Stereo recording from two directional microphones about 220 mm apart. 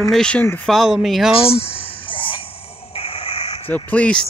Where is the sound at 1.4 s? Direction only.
25° left (ahead or behind).